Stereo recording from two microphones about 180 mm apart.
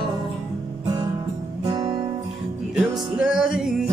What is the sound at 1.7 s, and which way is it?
Music, 20° right (ahead or behind).